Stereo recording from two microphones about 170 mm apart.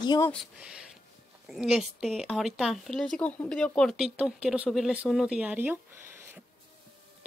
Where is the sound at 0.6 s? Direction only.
5° right (ahead or behind).